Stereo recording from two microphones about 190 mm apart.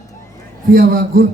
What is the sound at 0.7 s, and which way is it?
Speech, 50° right (ahead or behind).